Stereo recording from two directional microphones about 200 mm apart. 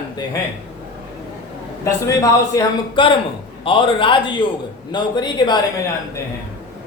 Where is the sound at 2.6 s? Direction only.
25° left (ahead or behind).